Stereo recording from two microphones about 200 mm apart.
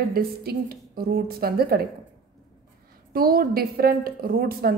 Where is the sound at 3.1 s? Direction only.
50° right (ahead or behind).